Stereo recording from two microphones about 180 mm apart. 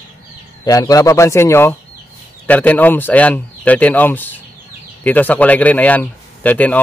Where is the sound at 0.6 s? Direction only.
20° left (ahead or behind).